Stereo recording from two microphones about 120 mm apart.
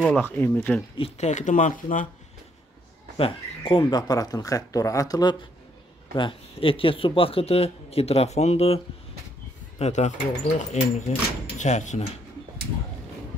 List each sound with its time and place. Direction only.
0.0 s speech: 10° left (ahead or behind)
1.1 s speech: 80° left
3.2 s speech: 50° left (ahead or behind)
4.1 s speech: 30° left (ahead or behind)
6.1 s a man's voice: 45° left (ahead or behind)
9.8 s speech: 70° left (ahead or behind)